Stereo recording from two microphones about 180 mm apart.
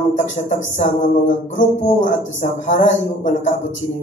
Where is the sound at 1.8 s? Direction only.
45° left (ahead or behind).